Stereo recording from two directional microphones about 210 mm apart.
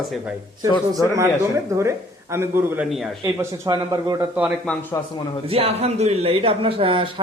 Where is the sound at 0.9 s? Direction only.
15° right (ahead or behind).